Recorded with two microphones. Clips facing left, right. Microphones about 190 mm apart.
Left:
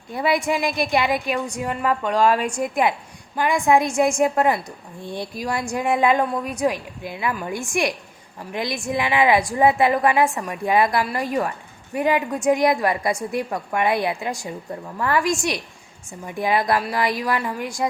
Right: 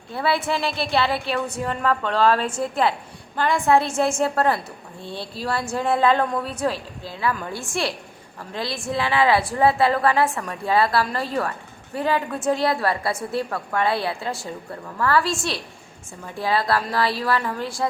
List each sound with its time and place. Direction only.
0.1 s a woman's voice: 15° left (ahead or behind)